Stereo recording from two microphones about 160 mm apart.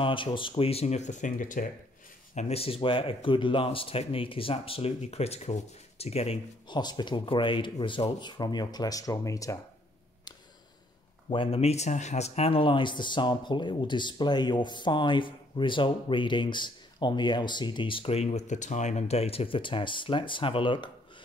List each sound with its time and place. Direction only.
0.0 s speech: 30° left (ahead or behind); by 1.7 s 55° left (ahead or behind)
2.3 s speech: 40° left (ahead or behind); by 9.6 s 20° left (ahead or behind)
11.2 s speech: 35° left (ahead or behind)